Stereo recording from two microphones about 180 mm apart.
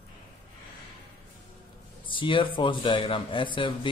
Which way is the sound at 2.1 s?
30° left (ahead or behind).